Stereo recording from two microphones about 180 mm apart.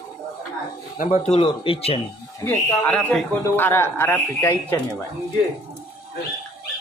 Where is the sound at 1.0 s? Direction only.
30° left (ahead or behind).